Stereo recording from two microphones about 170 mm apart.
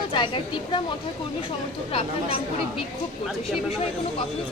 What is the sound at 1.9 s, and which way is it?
Speech, 35° left (ahead or behind).